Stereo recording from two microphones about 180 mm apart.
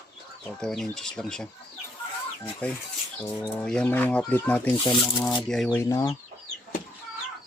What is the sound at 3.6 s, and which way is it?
Speech, 5° left (ahead or behind).